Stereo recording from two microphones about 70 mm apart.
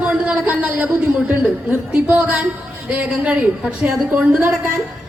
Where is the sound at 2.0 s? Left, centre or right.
Right.